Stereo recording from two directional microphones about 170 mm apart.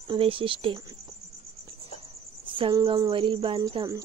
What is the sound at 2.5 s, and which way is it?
Speech, 25° right (ahead or behind).